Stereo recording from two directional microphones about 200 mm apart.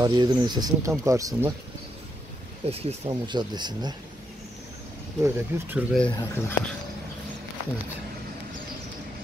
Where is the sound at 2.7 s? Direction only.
25° right (ahead or behind).